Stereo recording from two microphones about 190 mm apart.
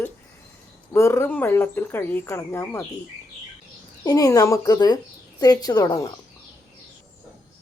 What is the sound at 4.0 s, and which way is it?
Speech, 20° left (ahead or behind).